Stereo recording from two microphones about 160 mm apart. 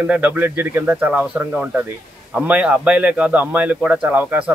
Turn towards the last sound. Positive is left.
turn(degrees=-10)  # may be behind; listen again after turning